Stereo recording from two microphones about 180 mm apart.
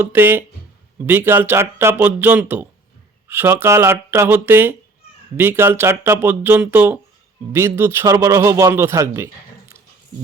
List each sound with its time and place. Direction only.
0.0 s speech: 10° right (ahead or behind)